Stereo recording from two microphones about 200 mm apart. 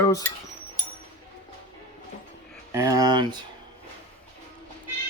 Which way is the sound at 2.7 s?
15° right (ahead or behind).